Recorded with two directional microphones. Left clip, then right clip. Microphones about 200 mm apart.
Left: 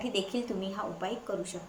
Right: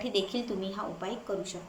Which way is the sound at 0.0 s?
5° left (ahead or behind).